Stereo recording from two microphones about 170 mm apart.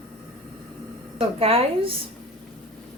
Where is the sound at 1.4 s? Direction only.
35° right (ahead or behind).